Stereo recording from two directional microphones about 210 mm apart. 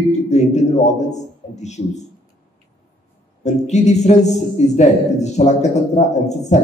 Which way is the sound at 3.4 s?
35° left (ahead or behind).